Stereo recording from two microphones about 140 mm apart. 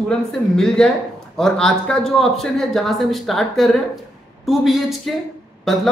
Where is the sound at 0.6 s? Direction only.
5° left (ahead or behind).